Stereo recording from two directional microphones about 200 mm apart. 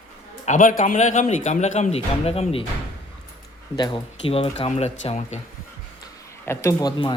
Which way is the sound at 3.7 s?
25° left (ahead or behind).